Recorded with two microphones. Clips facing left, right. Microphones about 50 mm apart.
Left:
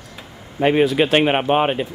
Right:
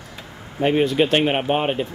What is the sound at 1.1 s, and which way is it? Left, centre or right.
Speech, left.